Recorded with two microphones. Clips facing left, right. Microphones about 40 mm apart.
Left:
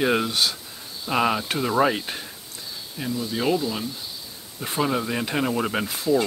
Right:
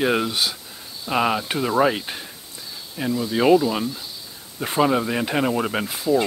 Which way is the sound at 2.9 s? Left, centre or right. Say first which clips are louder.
Right 5 dB; centre.